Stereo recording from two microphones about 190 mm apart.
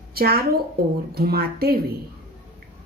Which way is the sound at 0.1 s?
55° right (ahead or behind).